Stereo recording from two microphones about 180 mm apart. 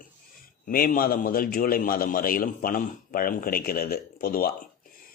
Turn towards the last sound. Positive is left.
turn(degrees=55)  # may be behind; listen again after turning